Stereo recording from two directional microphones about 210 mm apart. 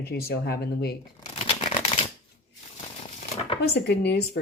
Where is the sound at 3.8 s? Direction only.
50° left (ahead or behind).